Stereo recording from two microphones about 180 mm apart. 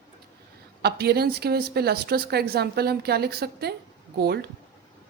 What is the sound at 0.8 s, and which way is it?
Speech, 60° right (ahead or behind).